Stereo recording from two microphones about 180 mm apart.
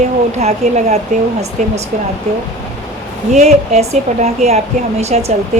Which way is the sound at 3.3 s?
40° right (ahead or behind).